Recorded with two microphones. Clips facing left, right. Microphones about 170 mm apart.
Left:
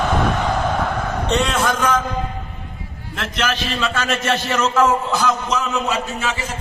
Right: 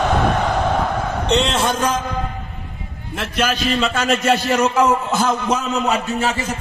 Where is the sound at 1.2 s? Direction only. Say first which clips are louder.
Right 1 dB; 20° right (ahead or behind).